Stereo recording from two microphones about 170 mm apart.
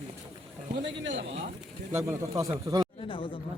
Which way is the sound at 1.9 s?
15° right (ahead or behind).